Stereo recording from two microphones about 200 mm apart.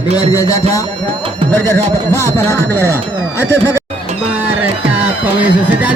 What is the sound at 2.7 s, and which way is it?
Speech, 15° right (ahead or behind).